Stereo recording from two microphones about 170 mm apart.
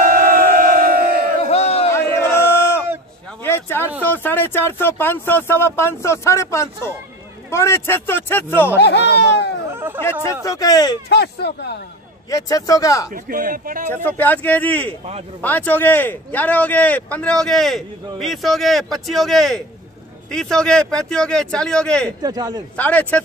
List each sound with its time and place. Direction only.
0.0 s crowd: 55° right (ahead or behind)
1.4 s crowd: 35° left (ahead or behind)
2.0 s crowd: 15° left (ahead or behind)
3.4 s a sound: 15° left (ahead or behind)
4.0 s speech: 10° left (ahead or behind)
8.7 s speech: 85° left
9.7 s a sound: 15° right (ahead or behind)
10.4 s speech: 20° left (ahead or behind)
11.1 s speech: 80° left
12.3 s speech: 20° left (ahead or behind)
13.1 s a man's voice: 55° right (ahead or behind)
14.0 s speech: 10° left (ahead or behind)
22.2 s a man's voice: 20° right (ahead or behind)
22.8 s speech: 10° left (ahead or behind)